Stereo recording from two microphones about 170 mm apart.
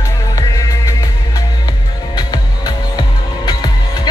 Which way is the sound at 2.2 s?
25° left (ahead or behind).